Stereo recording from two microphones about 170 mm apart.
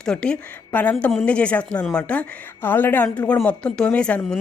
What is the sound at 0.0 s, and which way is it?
A woman's voice, 5° left (ahead or behind).